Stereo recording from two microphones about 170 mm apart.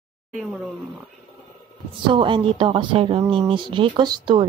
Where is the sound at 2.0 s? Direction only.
30° right (ahead or behind).